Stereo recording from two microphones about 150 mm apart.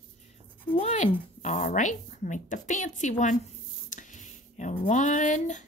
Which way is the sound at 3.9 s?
55° left (ahead or behind).